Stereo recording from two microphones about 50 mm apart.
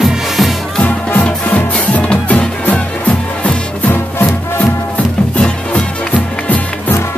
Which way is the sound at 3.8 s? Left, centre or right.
Left.